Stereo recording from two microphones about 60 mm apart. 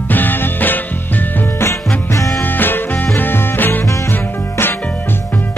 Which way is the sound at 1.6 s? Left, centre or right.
Left.